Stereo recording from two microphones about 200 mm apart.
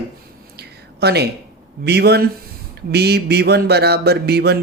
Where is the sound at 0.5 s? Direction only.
55° right (ahead or behind).